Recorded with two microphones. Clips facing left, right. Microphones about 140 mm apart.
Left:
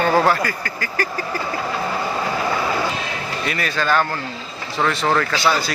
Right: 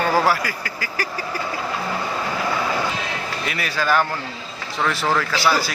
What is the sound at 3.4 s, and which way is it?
A man's voice, 5° right (ahead or behind).